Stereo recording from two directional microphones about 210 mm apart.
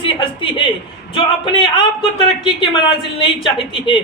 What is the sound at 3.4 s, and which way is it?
Speech, 25° left (ahead or behind).